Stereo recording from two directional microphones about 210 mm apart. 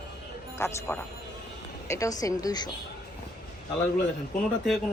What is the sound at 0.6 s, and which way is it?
A woman's voice, 10° left (ahead or behind).